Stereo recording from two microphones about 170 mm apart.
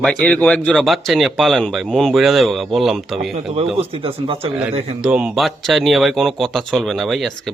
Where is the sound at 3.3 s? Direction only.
35° right (ahead or behind).